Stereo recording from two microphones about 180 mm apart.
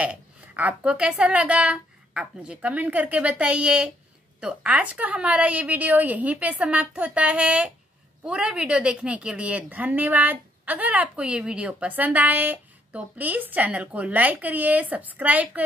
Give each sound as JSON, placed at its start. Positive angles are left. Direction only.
{"t": 0.0, "sound": "a woman's voice", "side_deg": -10}